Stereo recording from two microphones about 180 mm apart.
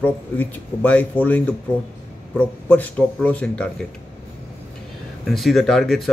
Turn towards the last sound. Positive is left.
turn(degrees=0)  # may be behind; listen again after turning